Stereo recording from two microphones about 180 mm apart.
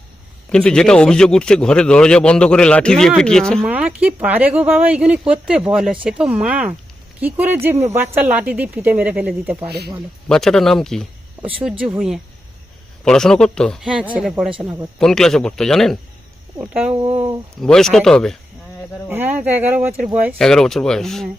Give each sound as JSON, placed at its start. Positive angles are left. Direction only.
{"t": 0.5, "sound": "speech", "side_deg": 5}
{"t": 3.7, "sound": "speech", "side_deg": -10}
{"t": 9.6, "sound": "speech", "side_deg": -65}
{"t": 10.2, "sound": "speech", "side_deg": 5}
{"t": 14.9, "sound": "speech", "side_deg": 5}
{"t": 17.6, "sound": "speech", "side_deg": 5}
{"t": 19.0, "sound": "speech", "side_deg": -10}
{"t": 20.4, "sound": "speech", "side_deg": 0}